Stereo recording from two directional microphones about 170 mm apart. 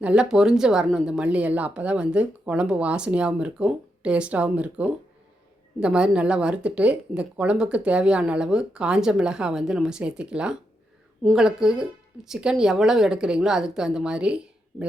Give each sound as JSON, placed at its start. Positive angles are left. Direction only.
{"t": 0.0, "sound": "a woman's voice", "side_deg": -5}